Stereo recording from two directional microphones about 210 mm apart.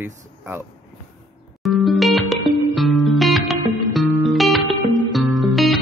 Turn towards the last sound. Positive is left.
turn(degrees=0)  # may be behind; listen again after turning